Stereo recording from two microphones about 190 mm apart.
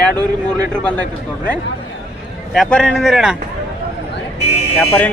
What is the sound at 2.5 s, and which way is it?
Speech, centre (ahead or behind).